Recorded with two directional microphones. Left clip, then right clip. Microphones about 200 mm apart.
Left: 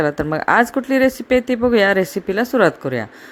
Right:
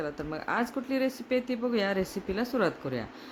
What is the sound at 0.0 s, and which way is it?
Speech, 45° left (ahead or behind).